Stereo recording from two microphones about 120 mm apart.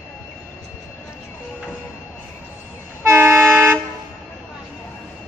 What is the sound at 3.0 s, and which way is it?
Train, 20° right (ahead or behind).